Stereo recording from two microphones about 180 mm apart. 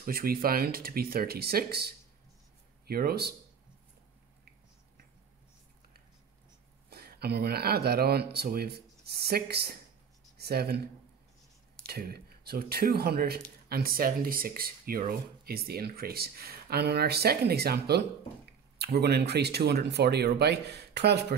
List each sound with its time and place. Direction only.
0.0 s speech: 55° right (ahead or behind)
6.9 s speech: 60° right (ahead or behind)
11.8 s speech: 60° right (ahead or behind)